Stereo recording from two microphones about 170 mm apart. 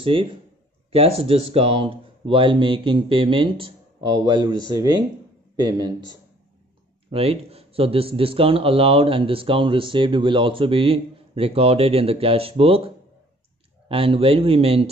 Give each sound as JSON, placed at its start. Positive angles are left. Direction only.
{"t": 0.0, "sound": "a man's voice", "side_deg": -30}
{"t": 7.1, "sound": "speech", "side_deg": -35}